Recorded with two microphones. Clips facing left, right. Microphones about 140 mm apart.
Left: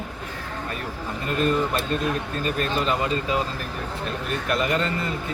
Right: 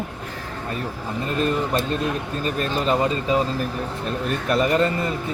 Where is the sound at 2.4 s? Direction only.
40° right (ahead or behind).